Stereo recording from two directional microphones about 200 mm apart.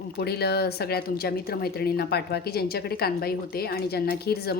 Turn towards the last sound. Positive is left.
turn(degrees=50)  # may be behind; listen again after turning